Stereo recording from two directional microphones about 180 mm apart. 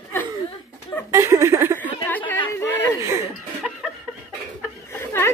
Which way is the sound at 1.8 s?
10° left (ahead or behind).